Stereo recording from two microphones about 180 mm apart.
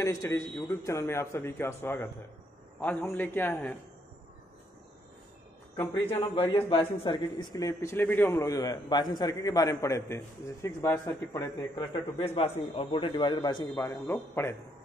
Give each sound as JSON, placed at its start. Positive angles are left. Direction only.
{"t": 0.0, "sound": "a man's voice", "side_deg": 15}
{"t": 5.8, "sound": "a man's voice", "side_deg": 10}
{"t": 6.3, "sound": "a man's voice", "side_deg": 25}
{"t": 11.9, "sound": "a man's voice", "side_deg": 30}
{"t": 13.7, "sound": "a man's voice", "side_deg": 10}